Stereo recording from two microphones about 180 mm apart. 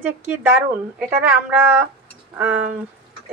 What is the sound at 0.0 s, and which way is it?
A woman's voice, 10° right (ahead or behind).